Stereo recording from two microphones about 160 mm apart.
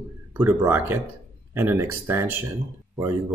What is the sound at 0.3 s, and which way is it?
Speech, 15° right (ahead or behind).